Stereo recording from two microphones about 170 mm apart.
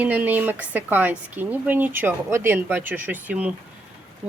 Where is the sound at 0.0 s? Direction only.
10° right (ahead or behind).